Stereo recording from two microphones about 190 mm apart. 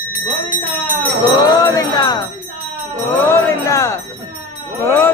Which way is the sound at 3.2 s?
15° left (ahead or behind).